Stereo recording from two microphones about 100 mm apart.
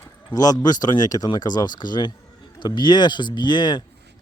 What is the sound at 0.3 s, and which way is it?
Speech, 40° left (ahead or behind).